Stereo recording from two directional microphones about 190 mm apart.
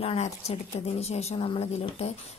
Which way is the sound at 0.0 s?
30° left (ahead or behind).